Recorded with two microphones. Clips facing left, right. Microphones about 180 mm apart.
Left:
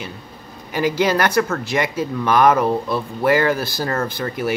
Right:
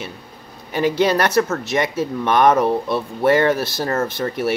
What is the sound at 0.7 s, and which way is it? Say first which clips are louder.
Speech: right 1 dB; 25° right (ahead or behind).